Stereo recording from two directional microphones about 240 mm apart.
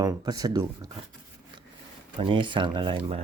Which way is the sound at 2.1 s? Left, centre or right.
Right.